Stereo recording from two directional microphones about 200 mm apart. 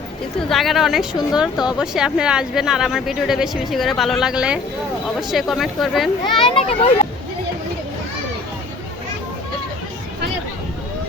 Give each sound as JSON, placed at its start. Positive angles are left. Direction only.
{"t": 0.4, "sound": "a woman's voice", "side_deg": 0}
{"t": 6.2, "sound": "a child's voice", "side_deg": 25}